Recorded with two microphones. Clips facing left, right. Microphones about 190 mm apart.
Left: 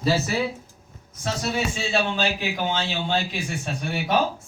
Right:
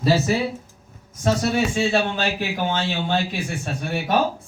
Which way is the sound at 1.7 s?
55° right (ahead or behind).